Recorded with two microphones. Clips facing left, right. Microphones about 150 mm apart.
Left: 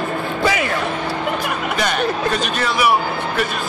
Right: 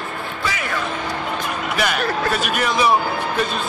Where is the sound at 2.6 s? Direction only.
25° right (ahead or behind).